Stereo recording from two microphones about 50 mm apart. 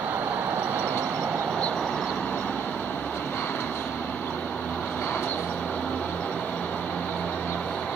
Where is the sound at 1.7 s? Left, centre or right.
Centre.